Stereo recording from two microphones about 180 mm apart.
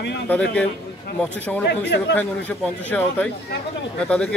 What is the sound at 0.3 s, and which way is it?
Speech, 10° left (ahead or behind).